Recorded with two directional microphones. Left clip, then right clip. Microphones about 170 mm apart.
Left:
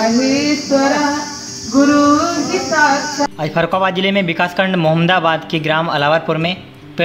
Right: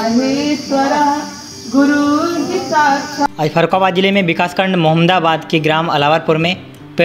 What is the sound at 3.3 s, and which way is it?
A man's voice, 25° right (ahead or behind).